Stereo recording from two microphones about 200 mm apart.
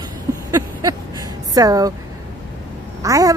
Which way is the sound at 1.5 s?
20° right (ahead or behind).